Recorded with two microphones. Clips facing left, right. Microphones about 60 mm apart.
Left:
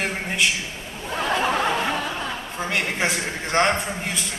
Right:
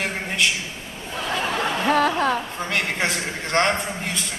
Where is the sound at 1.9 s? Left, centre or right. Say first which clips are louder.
Right 8 dB; right.